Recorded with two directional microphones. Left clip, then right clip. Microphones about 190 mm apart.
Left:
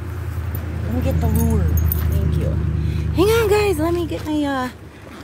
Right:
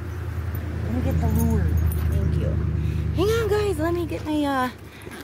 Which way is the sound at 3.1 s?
40° left (ahead or behind).